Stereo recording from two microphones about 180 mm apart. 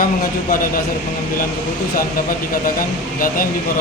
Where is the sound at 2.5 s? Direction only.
50° left (ahead or behind).